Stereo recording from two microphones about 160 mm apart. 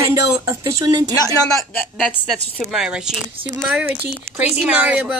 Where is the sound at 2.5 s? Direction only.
5° right (ahead or behind).